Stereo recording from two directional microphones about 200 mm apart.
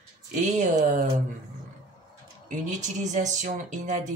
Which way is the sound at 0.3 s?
40° right (ahead or behind).